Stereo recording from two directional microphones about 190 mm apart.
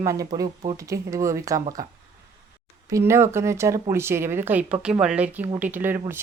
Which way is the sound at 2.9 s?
15° right (ahead or behind).